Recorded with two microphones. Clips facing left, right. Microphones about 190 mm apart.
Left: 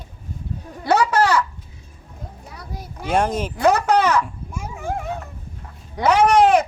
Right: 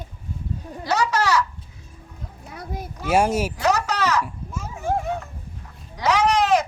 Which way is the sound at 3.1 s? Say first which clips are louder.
Right 1 dB; 10° right (ahead or behind).